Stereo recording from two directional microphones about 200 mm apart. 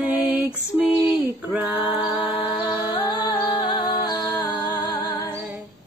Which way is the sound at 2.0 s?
5° right (ahead or behind).